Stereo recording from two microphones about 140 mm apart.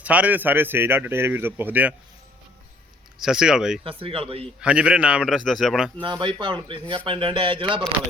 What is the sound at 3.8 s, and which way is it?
Speech, 40° right (ahead or behind).